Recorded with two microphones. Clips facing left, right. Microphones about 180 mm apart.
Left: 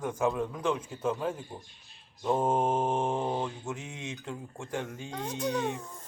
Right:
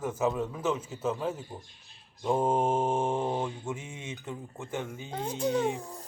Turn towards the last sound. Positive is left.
turn(degrees=-35)  # may be behind; listen again after turning